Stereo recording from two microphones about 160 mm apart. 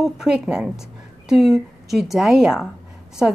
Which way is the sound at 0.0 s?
5° right (ahead or behind).